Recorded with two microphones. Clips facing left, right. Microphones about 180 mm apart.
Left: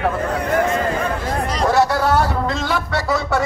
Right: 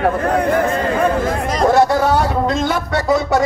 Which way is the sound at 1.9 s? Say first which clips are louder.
Right 2 dB; 20° right (ahead or behind).